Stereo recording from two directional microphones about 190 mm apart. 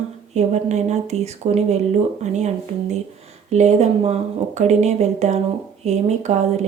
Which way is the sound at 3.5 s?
35° right (ahead or behind).